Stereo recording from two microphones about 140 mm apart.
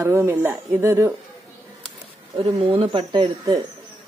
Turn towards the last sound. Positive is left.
turn(degrees=-35)  # may be behind; listen again after turning